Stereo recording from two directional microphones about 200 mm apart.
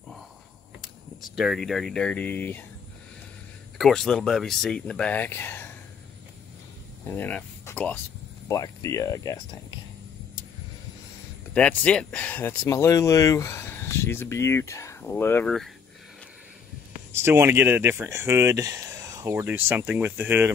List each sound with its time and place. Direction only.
1.3 s speech: centre (ahead or behind)
3.7 s speech: centre (ahead or behind)
7.1 s speech: 10° left (ahead or behind)
11.5 s speech: 5° left (ahead or behind)
17.1 s speech: 10° right (ahead or behind)